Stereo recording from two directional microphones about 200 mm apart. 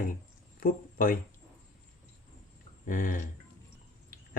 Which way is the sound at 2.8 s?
40° left (ahead or behind).